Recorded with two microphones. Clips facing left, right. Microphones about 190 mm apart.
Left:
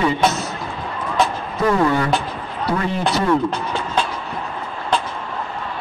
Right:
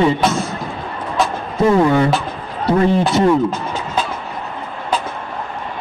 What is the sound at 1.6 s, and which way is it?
Speech, 25° right (ahead or behind).